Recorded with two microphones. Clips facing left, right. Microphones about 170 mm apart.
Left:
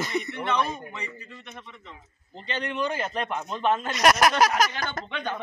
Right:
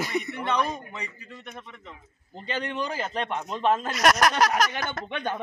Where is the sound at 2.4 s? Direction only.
45° right (ahead or behind).